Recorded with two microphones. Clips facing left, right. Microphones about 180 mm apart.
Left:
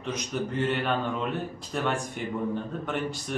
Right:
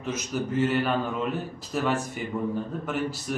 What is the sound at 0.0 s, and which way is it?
Speech, 5° right (ahead or behind).